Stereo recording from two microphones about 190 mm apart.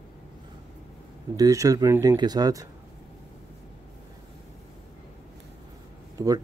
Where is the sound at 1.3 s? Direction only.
20° right (ahead or behind).